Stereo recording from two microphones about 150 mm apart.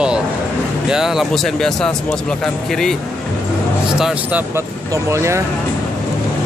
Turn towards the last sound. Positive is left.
turn(degrees=-20)  # may be behind; listen again after turning